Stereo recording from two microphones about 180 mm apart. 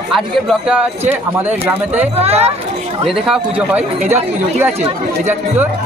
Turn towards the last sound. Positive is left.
turn(degrees=-5)  # may be behind; listen again after turning